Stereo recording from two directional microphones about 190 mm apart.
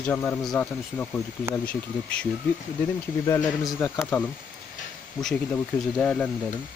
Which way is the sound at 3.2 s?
20° left (ahead or behind).